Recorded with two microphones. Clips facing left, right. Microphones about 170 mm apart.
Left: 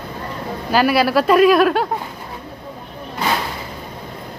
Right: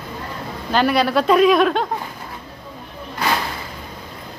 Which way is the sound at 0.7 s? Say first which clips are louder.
Left 2 dB; 5° left (ahead or behind).